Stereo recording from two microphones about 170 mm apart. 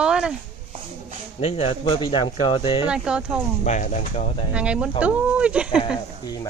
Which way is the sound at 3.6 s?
45° left (ahead or behind).